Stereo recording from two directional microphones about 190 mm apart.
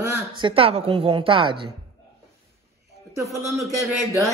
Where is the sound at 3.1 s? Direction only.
15° right (ahead or behind).